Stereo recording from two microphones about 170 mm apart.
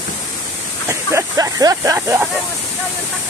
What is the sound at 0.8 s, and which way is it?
Speech, 20° right (ahead or behind).